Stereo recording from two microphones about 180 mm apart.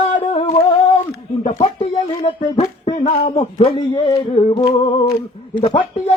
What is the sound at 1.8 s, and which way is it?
A man's voice, 30° left (ahead or behind).